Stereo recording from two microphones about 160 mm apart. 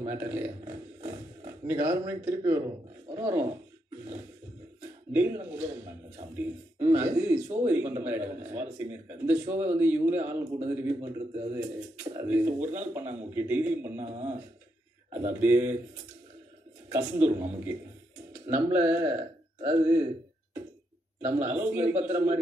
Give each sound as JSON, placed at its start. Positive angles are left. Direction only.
{"t": 0.0, "sound": "speech", "side_deg": -15}
{"t": 5.1, "sound": "speech", "side_deg": -10}
{"t": 14.0, "sound": "speech", "side_deg": -45}
{"t": 15.1, "sound": "speech", "side_deg": -10}
{"t": 16.9, "sound": "speech", "side_deg": -15}
{"t": 18.5, "sound": "speech", "side_deg": -15}
{"t": 21.2, "sound": "speech", "side_deg": -10}